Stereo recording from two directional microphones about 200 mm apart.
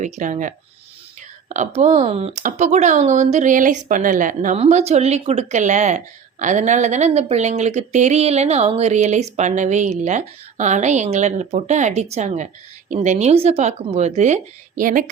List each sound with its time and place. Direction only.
0.0 s a woman's voice: 40° right (ahead or behind)